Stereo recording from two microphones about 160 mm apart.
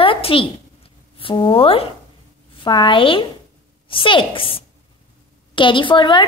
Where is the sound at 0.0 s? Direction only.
35° left (ahead or behind).